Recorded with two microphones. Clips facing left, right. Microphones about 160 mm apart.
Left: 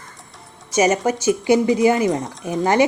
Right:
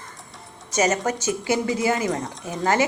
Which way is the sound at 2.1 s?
Centre (ahead or behind).